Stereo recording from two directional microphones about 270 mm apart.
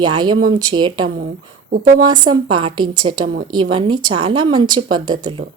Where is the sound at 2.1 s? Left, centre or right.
Centre.